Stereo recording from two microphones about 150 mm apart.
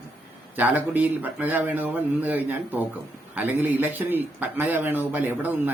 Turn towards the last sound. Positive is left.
turn(degrees=-15)  # may be behind; listen again after turning